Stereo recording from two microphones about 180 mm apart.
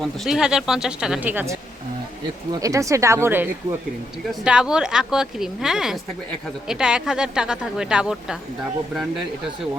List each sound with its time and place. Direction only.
0.0 s speech: centre (ahead or behind)